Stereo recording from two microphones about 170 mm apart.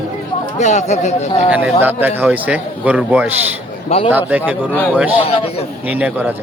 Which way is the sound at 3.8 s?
35° left (ahead or behind).